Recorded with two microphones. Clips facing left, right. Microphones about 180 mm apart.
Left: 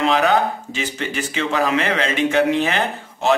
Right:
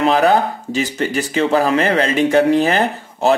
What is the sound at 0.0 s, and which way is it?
Speech, 35° right (ahead or behind).